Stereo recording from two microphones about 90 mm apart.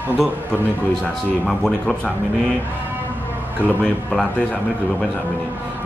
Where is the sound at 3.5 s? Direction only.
20° left (ahead or behind).